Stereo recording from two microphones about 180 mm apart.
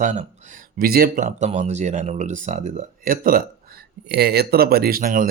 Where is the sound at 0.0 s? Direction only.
45° right (ahead or behind).